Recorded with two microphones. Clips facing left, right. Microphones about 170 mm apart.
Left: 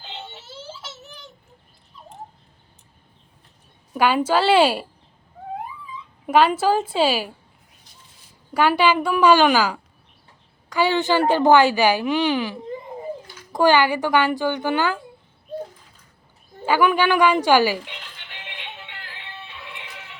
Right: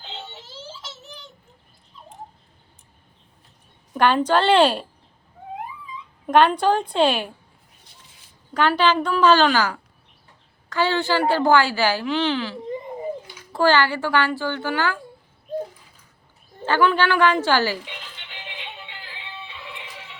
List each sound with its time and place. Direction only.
0.1 s a sound: 10° left (ahead or behind)
3.9 s a woman's voice: 5° left (ahead or behind)
6.2 s a woman's voice: 5° left (ahead or behind)
8.5 s a woman's voice: 10° left (ahead or behind)
16.6 s a woman's voice: 10° left (ahead or behind)